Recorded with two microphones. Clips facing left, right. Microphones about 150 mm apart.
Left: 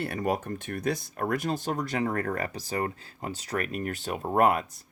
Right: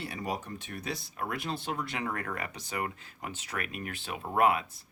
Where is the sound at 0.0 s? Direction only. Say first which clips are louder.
Left 7 dB; 55° left (ahead or behind).